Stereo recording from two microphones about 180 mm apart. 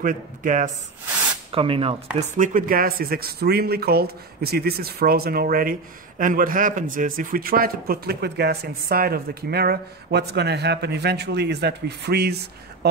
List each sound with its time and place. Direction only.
0.0 s speech: 50° right (ahead or behind)
1.5 s speech: 30° right (ahead or behind)
2.3 s speech: 45° right (ahead or behind); by 12.4 s 65° right (ahead or behind)